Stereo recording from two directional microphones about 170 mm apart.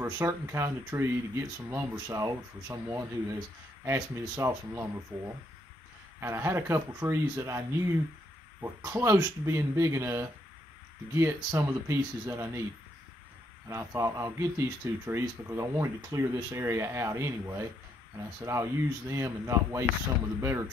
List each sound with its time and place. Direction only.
0.0 s speech: 15° right (ahead or behind)
13.7 s speech: 20° right (ahead or behind)